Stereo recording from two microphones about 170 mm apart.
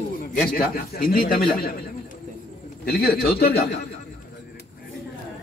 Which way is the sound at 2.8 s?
65° left (ahead or behind).